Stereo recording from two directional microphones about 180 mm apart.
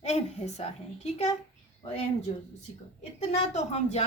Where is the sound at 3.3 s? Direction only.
40° left (ahead or behind).